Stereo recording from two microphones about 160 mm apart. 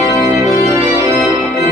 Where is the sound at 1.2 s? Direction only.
15° right (ahead or behind).